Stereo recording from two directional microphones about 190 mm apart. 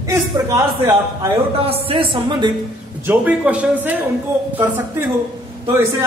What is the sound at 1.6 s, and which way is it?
Speech, 30° right (ahead or behind).